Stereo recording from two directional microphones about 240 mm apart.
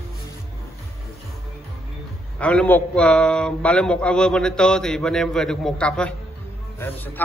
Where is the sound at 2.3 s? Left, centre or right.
Centre.